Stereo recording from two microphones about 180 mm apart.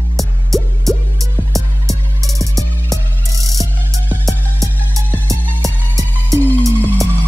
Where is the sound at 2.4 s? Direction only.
20° right (ahead or behind).